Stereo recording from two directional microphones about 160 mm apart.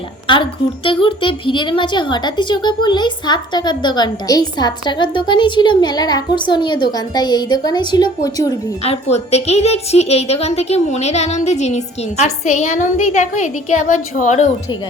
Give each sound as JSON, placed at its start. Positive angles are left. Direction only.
{"t": 0.9, "sound": "speech", "side_deg": 30}
{"t": 8.8, "sound": "a woman's voice", "side_deg": 40}